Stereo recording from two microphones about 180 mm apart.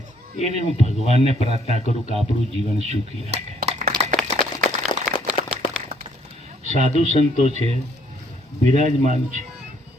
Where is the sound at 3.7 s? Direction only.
45° right (ahead or behind).